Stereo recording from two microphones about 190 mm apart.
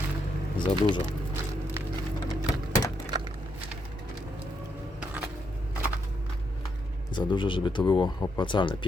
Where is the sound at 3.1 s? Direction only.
20° right (ahead or behind).